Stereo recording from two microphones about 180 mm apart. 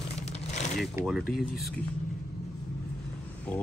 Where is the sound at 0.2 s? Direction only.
40° left (ahead or behind).